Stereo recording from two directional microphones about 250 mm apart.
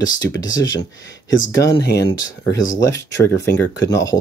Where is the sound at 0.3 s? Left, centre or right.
Centre.